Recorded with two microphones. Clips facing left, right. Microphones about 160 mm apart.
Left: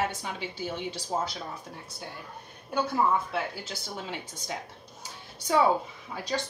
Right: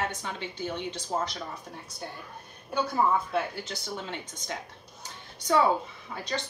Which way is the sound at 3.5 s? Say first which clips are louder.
Right 2 dB; 5° left (ahead or behind).